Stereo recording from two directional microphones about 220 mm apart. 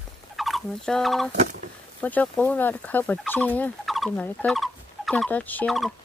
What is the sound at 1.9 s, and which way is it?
Speech, 5° left (ahead or behind).